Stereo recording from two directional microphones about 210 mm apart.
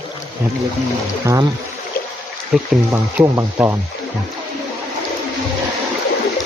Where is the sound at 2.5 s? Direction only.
5° right (ahead or behind).